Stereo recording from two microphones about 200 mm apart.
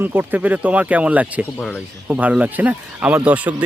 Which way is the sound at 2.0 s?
5° right (ahead or behind).